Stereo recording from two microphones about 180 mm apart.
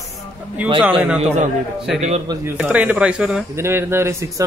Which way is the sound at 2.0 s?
35° right (ahead or behind).